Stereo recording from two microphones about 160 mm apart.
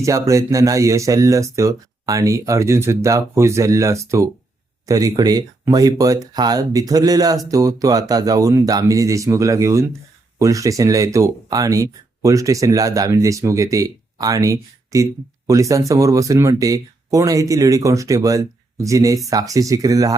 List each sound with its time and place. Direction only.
0.0 s speech: 20° right (ahead or behind)